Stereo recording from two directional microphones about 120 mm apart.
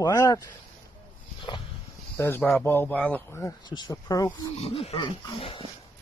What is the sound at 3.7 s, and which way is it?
Speech, 35° left (ahead or behind).